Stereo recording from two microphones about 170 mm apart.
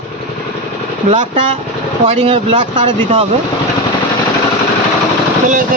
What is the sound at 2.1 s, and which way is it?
Speech, 35° right (ahead or behind).